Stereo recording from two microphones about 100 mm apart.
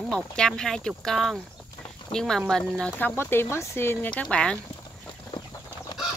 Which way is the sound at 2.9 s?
20° left (ahead or behind).